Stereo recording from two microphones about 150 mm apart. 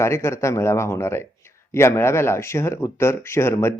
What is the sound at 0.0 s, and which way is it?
Speech, 20° left (ahead or behind).